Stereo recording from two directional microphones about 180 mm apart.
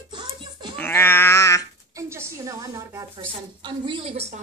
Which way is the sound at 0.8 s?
10° left (ahead or behind).